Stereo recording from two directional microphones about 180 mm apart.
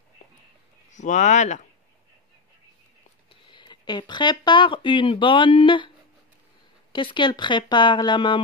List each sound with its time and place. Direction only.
0.9 s speech: 45° left (ahead or behind)
3.4 s speech: 25° left (ahead or behind)
6.9 s speech: 25° left (ahead or behind)